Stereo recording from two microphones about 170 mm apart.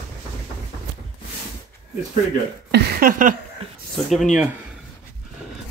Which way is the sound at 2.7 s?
75° right (ahead or behind).